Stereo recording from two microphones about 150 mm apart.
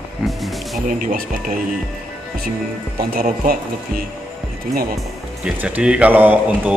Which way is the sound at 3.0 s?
80° right.